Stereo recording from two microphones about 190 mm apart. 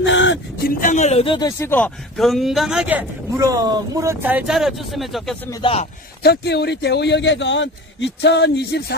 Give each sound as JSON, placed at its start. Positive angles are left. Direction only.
{"t": 0.0, "sound": "vehicle", "side_deg": 75}
{"t": 0.7, "sound": "speech", "side_deg": 45}
{"t": 1.6, "sound": "a man's voice", "side_deg": 10}
{"t": 5.5, "sound": "a man's voice", "side_deg": 25}
{"t": 6.2, "sound": "a man's voice", "side_deg": 60}